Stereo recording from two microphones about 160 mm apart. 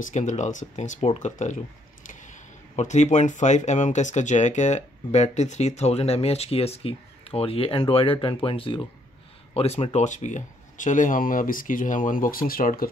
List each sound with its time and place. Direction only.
0.0 s speech: 50° left (ahead or behind)